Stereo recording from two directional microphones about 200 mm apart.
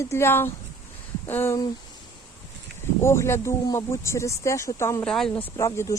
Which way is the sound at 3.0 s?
15° left (ahead or behind).